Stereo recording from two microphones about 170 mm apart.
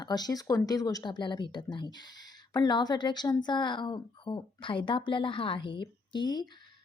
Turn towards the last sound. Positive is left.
turn(degrees=25)  # may be behind; listen again after turning